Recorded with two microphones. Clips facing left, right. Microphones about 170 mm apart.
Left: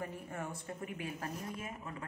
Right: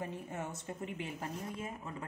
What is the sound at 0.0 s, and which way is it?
A woman's voice, 20° right (ahead or behind).